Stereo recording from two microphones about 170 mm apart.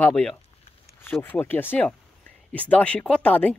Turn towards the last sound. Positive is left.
turn(degrees=10)  # may be behind; listen again after turning